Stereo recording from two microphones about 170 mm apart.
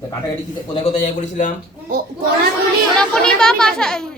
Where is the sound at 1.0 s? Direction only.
45° left (ahead or behind).